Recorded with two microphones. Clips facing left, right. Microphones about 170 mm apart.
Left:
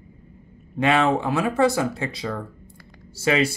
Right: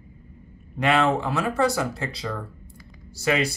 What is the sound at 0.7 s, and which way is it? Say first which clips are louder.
Speech: left 1 dB; 20° left (ahead or behind).